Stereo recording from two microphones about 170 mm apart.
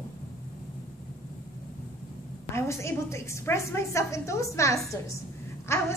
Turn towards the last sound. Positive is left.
turn(degrees=15)  # may be behind; listen again after turning